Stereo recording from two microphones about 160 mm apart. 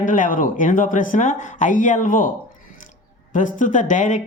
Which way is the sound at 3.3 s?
55° left (ahead or behind).